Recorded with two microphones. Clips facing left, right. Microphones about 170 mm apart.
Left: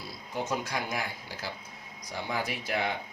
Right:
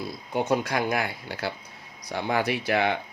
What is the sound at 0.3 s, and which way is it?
Speech, 65° right (ahead or behind).